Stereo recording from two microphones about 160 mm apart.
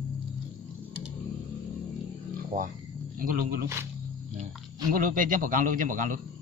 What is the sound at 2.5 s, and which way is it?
A man's voice, 60° right (ahead or behind).